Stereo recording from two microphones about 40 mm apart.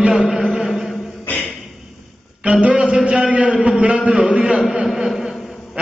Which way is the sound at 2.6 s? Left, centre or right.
Right.